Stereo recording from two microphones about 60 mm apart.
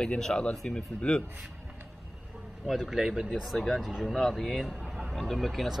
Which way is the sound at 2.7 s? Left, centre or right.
Centre.